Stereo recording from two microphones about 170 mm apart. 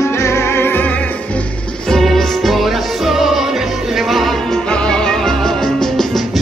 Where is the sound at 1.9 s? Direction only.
Centre (ahead or behind).